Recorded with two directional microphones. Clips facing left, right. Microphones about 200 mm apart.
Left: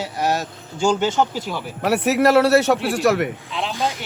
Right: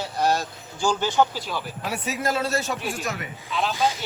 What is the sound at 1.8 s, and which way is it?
A man's voice, 70° left (ahead or behind).